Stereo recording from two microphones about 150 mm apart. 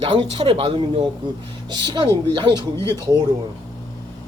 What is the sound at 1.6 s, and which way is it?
Speech, 30° right (ahead or behind).